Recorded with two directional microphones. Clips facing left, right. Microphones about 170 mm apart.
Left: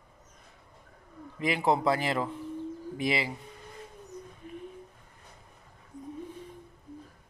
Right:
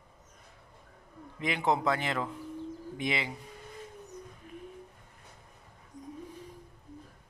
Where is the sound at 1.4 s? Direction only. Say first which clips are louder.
Left 3 dB; 5° left (ahead or behind).